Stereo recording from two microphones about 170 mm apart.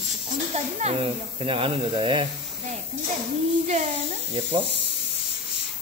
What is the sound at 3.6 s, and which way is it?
Speech, 40° right (ahead or behind).